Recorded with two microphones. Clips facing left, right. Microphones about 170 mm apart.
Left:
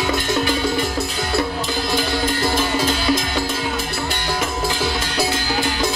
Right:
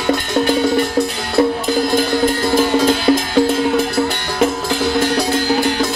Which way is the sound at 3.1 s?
50° right (ahead or behind).